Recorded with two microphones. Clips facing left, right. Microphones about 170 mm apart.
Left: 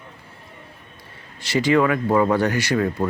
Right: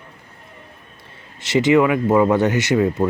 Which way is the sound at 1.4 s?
20° right (ahead or behind).